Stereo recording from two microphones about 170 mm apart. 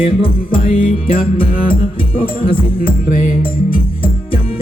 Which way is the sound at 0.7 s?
55° left (ahead or behind).